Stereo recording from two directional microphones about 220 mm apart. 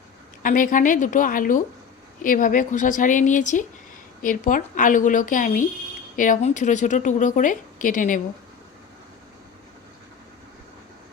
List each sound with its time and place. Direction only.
0.4 s a woman's voice: 35° left (ahead or behind)